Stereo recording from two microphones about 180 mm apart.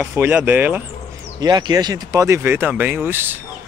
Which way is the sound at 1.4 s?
20° right (ahead or behind).